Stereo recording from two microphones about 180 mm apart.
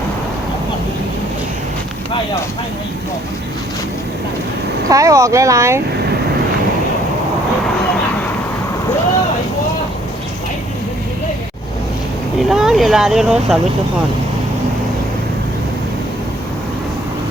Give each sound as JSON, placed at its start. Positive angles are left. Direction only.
{"t": 4.9, "sound": "speech", "side_deg": -15}
{"t": 12.4, "sound": "speech", "side_deg": 0}